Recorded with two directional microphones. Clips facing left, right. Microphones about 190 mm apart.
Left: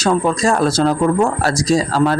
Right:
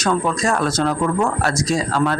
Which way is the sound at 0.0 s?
30° left (ahead or behind).